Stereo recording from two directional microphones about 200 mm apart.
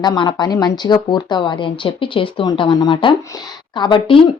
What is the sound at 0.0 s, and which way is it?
A woman's voice, 20° left (ahead or behind).